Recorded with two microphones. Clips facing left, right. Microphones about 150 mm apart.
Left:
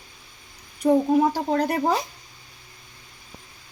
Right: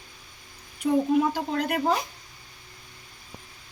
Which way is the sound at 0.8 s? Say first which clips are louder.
Left 4 dB; 40° left (ahead or behind).